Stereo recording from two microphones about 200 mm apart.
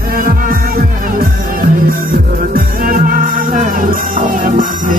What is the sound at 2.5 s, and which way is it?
Music, 45° right (ahead or behind).